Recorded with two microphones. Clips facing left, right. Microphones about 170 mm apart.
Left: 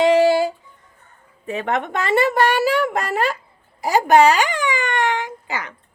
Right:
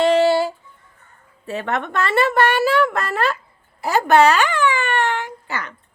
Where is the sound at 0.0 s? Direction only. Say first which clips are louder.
Left 1 dB; 15° left (ahead or behind).